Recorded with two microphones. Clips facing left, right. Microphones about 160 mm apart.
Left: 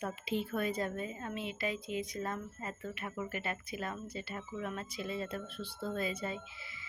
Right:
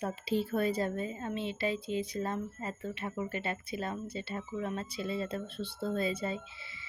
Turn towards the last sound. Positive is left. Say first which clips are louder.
# right 4 dB
turn(degrees=-30)  # may be behind; listen again after turning